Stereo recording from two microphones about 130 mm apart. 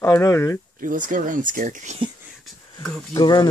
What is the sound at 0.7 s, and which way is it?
Speech, 90° right.